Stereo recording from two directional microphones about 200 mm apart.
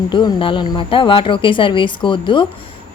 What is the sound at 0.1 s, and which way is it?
A woman's voice, 25° left (ahead or behind).